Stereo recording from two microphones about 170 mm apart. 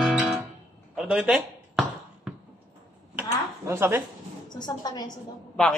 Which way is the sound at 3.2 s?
15° right (ahead or behind).